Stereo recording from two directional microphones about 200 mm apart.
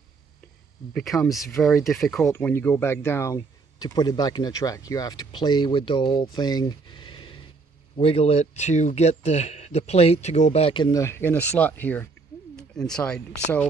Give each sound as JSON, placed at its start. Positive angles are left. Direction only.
{"t": 0.9, "sound": "speech", "side_deg": 0}
{"t": 6.3, "sound": "a sound", "side_deg": 20}
{"t": 8.0, "sound": "speech", "side_deg": 30}